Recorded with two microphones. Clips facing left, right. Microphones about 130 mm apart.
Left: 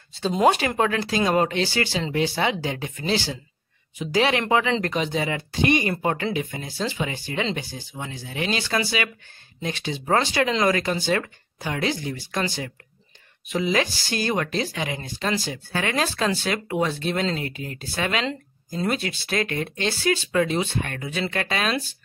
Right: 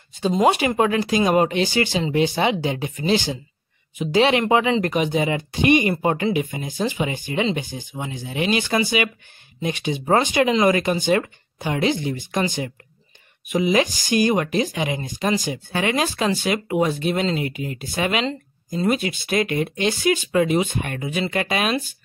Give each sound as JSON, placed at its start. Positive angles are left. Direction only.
{"t": 0.5, "sound": "speech", "side_deg": -10}